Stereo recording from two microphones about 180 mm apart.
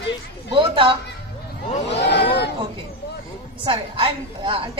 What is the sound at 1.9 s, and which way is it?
Speech, 70° left (ahead or behind).